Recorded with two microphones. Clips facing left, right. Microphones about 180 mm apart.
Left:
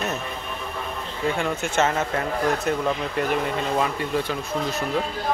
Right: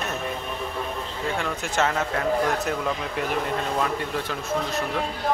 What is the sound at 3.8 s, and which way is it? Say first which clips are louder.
Speech: left 2 dB; 5° left (ahead or behind).